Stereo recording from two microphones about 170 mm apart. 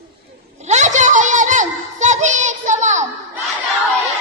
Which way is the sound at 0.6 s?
45° right (ahead or behind).